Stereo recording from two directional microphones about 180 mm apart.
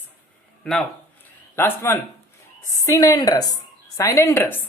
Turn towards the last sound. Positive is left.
turn(degrees=10)  # may be behind; listen again after turning